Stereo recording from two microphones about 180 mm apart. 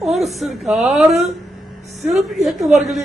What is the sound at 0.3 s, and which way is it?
A man's voice, centre (ahead or behind).